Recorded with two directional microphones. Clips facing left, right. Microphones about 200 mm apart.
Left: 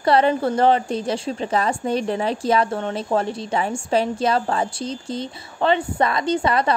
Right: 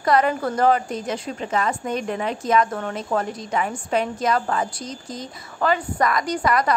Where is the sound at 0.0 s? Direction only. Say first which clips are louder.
Left 2 dB; 30° left (ahead or behind).